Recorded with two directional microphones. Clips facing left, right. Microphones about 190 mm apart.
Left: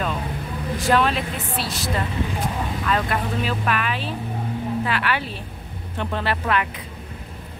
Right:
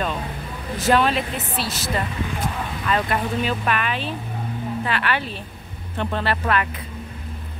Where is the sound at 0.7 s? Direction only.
Centre (ahead or behind).